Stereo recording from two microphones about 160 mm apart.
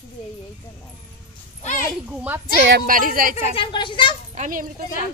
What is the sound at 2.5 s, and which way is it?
Speech, 80° right.